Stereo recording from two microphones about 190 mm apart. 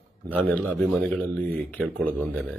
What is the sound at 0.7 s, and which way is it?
Speech, 5° left (ahead or behind).